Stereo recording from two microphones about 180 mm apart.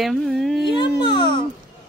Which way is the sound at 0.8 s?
25° left (ahead or behind).